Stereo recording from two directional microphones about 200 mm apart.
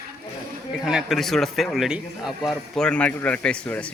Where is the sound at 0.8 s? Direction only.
Centre (ahead or behind).